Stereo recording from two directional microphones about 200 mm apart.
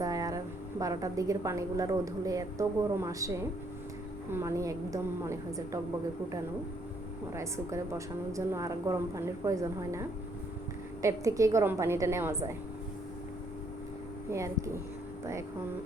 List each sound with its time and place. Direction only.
0.0 s a woman's voice: 15° right (ahead or behind)
7.3 s a woman's voice: 15° right (ahead or behind)
14.3 s a woman's voice: 15° right (ahead or behind)